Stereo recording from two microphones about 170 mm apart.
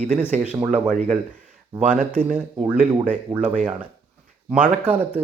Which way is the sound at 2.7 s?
45° right (ahead or behind).